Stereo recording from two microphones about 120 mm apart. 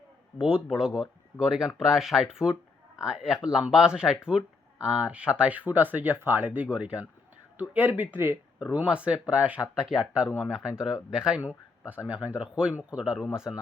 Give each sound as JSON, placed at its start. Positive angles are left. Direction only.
{"t": 0.3, "sound": "speech", "side_deg": -5}